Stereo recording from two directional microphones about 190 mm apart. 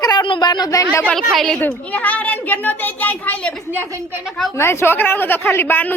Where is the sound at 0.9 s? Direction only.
5° left (ahead or behind).